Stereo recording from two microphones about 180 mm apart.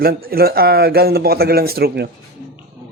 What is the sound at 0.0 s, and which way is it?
Speech, 55° right (ahead or behind).